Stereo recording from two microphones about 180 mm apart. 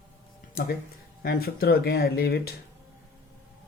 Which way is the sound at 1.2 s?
60° left (ahead or behind).